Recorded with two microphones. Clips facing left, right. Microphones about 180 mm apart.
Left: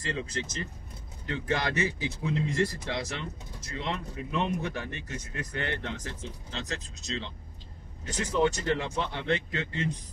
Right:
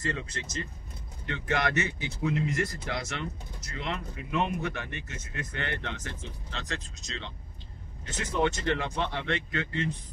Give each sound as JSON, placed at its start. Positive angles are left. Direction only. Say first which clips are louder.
{"t": 0.0, "sound": "speech", "louder": "left 1 dB", "side_deg": 30}